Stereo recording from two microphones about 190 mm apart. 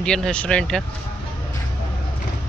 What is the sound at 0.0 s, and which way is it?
Speech, 5° left (ahead or behind).